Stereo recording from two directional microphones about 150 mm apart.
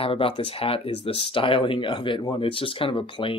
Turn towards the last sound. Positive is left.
turn(degrees=35)  # may be behind; listen again after turning